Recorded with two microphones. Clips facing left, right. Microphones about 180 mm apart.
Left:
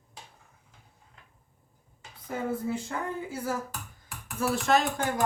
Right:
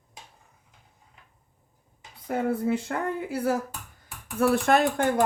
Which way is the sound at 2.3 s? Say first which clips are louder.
Right 5 dB; 65° right (ahead or behind).